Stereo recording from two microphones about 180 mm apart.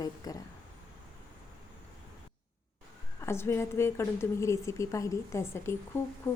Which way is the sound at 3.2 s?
15° left (ahead or behind).